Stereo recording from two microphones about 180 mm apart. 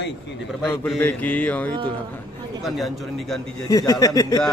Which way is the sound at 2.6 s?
Centre (ahead or behind).